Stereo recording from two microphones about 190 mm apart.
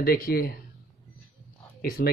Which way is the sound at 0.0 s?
55° left (ahead or behind).